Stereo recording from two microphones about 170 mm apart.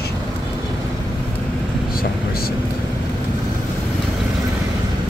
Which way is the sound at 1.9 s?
60° left (ahead or behind).